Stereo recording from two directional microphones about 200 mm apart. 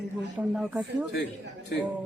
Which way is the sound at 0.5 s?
Centre (ahead or behind).